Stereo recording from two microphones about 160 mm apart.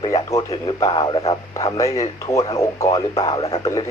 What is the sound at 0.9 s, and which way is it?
Speech, 30° left (ahead or behind).